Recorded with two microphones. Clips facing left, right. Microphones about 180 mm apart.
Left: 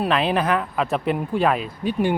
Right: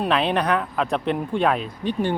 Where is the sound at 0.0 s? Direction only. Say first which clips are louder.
Left 1 dB; centre (ahead or behind).